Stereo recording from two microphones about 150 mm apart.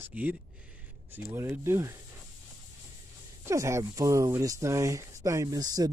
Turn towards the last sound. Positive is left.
turn(degrees=-25)  # may be behind; listen again after turning